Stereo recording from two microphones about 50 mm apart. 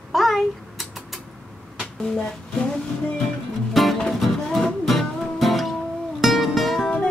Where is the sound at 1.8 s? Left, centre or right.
Centre.